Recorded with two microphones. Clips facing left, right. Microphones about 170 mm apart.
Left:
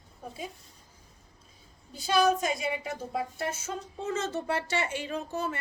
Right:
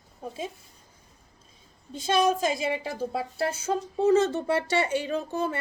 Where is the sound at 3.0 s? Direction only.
30° right (ahead or behind).